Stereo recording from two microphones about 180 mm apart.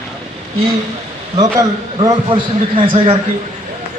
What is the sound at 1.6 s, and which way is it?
Speech, 20° right (ahead or behind).